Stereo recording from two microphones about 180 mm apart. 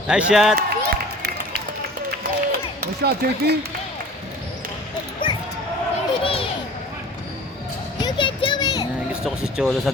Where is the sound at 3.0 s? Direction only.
65° right (ahead or behind).